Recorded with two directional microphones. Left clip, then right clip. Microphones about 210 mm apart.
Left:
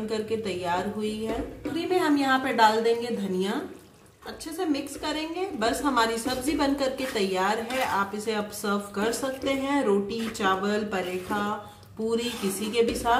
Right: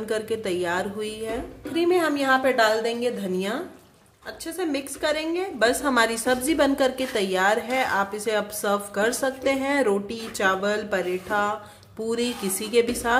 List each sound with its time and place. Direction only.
0.1 s a woman's voice: 50° right (ahead or behind)
4.6 s a woman's voice: 50° right (ahead or behind)